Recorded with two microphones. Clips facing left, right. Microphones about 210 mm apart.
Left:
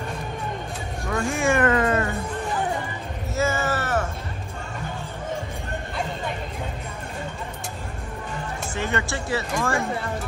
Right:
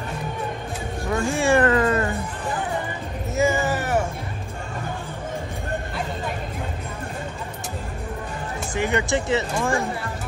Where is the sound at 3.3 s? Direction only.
15° right (ahead or behind).